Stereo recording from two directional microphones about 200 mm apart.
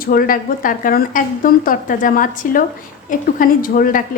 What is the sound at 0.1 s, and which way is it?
A woman's voice, 45° left (ahead or behind).